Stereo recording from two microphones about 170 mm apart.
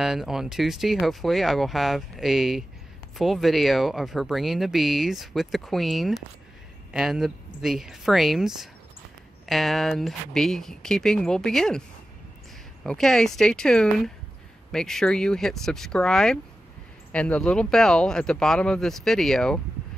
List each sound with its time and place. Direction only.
0.0 s speech: 5° right (ahead or behind)
12.8 s speech: centre (ahead or behind)